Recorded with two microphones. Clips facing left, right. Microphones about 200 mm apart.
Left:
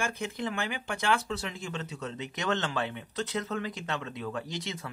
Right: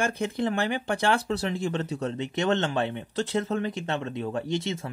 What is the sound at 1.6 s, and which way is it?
Speech, 55° right (ahead or behind).